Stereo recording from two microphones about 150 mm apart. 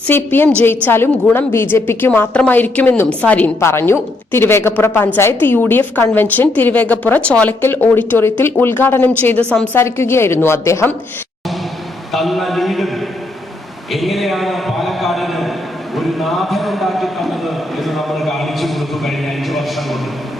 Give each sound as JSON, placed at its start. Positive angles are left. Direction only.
{"t": 0.1, "sound": "a woman's voice", "side_deg": 15}
{"t": 12.1, "sound": "speech", "side_deg": 0}
{"t": 13.9, "sound": "a man's voice", "side_deg": 0}
{"t": 17.7, "sound": "a sound", "side_deg": 0}